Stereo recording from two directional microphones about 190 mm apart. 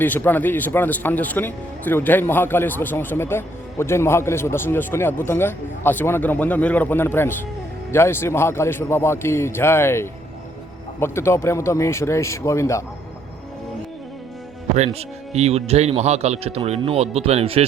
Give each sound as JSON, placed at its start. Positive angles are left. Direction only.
{"t": 0.0, "sound": "speech", "side_deg": 10}
{"t": 14.8, "sound": "speech", "side_deg": -35}